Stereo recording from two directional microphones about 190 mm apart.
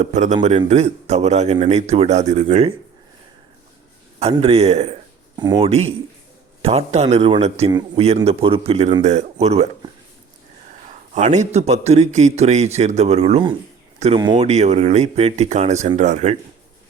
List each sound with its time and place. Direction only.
0.0 s a man's voice: 40° right (ahead or behind)
4.2 s a man's voice: 30° right (ahead or behind)
5.4 s a man's voice: 20° right (ahead or behind)
5.6 s a man's voice: 35° right (ahead or behind)
7.7 s a man's voice: 20° right (ahead or behind)
8.0 s a man's voice: 35° right (ahead or behind)
11.1 s a man's voice: 40° right (ahead or behind)